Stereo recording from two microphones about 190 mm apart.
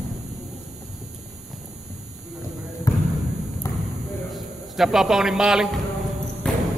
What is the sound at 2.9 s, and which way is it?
Basketball bounce, 15° left (ahead or behind).